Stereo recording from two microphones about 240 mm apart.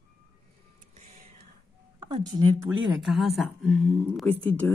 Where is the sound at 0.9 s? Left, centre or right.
Right.